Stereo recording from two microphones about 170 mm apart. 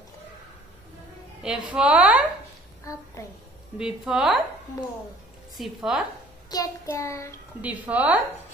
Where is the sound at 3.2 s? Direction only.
15° left (ahead or behind).